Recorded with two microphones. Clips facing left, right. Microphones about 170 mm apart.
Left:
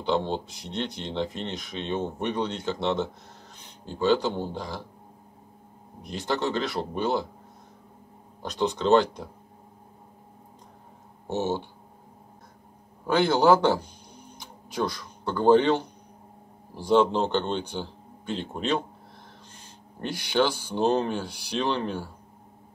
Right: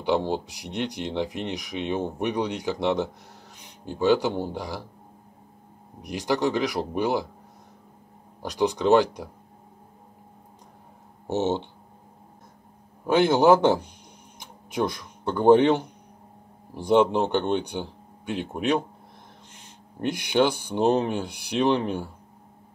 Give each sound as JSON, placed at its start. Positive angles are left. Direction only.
{"t": 0.0, "sound": "speech", "side_deg": -10}
{"t": 6.0, "sound": "speech", "side_deg": -15}
{"t": 8.4, "sound": "speech", "side_deg": -15}
{"t": 11.2, "sound": "a man's voice", "side_deg": -20}
{"t": 13.0, "sound": "a man's voice", "side_deg": -20}
{"t": 20.0, "sound": "speech", "side_deg": -20}